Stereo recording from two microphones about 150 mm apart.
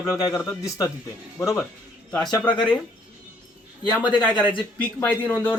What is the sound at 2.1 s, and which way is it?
Speech, 5° left (ahead or behind).